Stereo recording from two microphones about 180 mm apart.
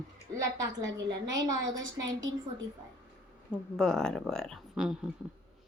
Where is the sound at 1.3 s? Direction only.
20° right (ahead or behind).